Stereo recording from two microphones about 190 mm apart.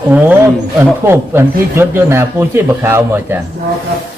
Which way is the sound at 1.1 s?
10° right (ahead or behind).